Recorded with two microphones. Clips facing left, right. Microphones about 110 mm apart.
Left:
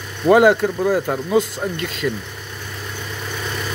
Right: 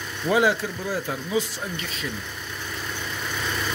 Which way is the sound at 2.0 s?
70° left (ahead or behind).